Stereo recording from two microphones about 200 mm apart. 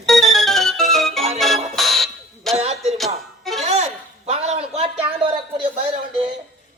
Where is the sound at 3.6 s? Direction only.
35° right (ahead or behind).